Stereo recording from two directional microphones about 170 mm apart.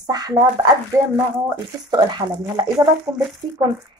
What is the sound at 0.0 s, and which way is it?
Speech, 25° right (ahead or behind).